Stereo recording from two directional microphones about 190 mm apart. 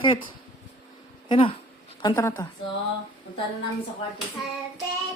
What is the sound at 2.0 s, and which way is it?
Speech, 15° left (ahead or behind).